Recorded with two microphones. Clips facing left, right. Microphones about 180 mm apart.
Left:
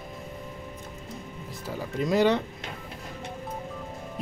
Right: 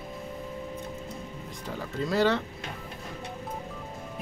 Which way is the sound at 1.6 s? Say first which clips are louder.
Left 3 dB; 10° left (ahead or behind).